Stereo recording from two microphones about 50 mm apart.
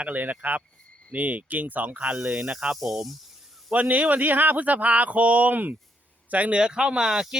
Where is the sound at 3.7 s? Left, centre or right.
Right.